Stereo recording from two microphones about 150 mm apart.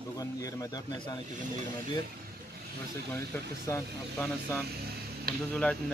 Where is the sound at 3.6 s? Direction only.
15° left (ahead or behind).